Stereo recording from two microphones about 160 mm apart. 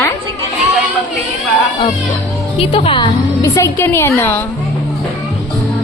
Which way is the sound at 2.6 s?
35° left (ahead or behind).